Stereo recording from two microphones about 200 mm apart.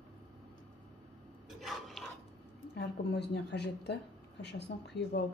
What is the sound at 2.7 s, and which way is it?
A woman's voice, 55° left (ahead or behind).